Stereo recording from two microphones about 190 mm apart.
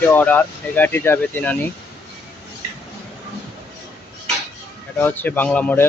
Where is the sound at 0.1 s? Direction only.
10° left (ahead or behind).